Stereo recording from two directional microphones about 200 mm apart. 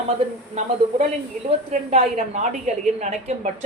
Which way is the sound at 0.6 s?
35° right (ahead or behind).